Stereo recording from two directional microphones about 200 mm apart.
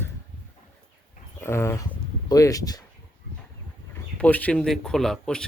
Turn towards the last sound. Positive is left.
turn(degrees=5)  # may be behind; listen again after turning